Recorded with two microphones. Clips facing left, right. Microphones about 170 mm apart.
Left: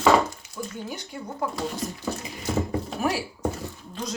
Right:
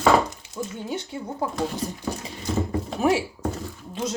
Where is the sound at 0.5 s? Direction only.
25° right (ahead or behind).